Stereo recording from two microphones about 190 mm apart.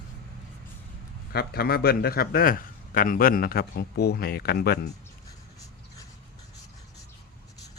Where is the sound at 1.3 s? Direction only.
55° left (ahead or behind).